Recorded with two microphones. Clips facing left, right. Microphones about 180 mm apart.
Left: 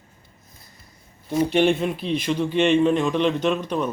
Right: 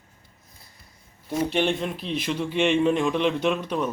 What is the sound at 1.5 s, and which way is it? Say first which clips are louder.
Speech: left 7 dB; 5° left (ahead or behind).